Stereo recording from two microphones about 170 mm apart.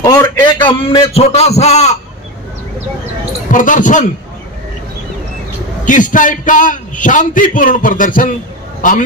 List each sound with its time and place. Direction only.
0.0 s a man's voice: 20° left (ahead or behind); by 1.9 s 40° left (ahead or behind)
3.5 s a man's voice: 50° left (ahead or behind)
5.9 s a man's voice: 50° left (ahead or behind)